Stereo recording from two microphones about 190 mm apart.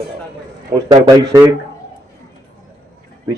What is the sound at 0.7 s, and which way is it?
Speech, 20° right (ahead or behind).